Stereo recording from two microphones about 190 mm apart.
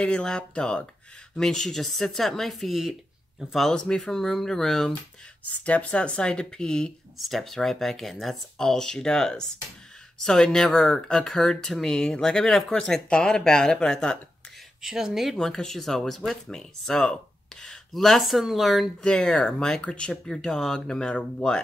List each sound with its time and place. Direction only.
0.0 s speech: 5° left (ahead or behind)